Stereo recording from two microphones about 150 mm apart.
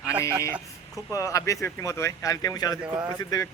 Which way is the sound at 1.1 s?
20° left (ahead or behind).